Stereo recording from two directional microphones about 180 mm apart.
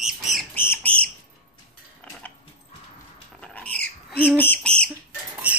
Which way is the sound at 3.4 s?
5° left (ahead or behind).